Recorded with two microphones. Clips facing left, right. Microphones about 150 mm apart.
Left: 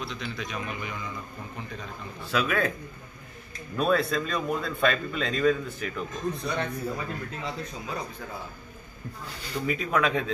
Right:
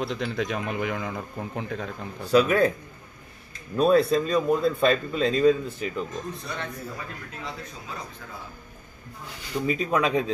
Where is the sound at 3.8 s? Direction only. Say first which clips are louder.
Right 5 dB; 35° right (ahead or behind).